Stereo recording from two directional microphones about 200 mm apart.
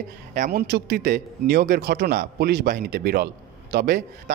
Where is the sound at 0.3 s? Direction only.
45° right (ahead or behind).